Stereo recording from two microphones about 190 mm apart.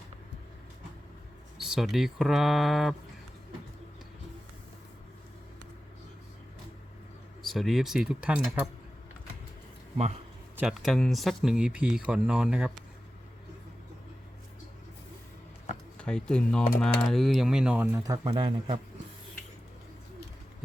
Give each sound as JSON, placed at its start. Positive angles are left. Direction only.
{"t": 1.6, "sound": "speech", "side_deg": 0}
{"t": 7.5, "sound": "speech", "side_deg": 0}
{"t": 10.6, "sound": "speech", "side_deg": 0}
{"t": 16.0, "sound": "speech", "side_deg": 5}
{"t": 17.9, "sound": "speech", "side_deg": -20}